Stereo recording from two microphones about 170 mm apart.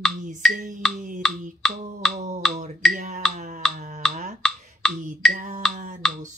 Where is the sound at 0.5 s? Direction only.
50° right (ahead or behind).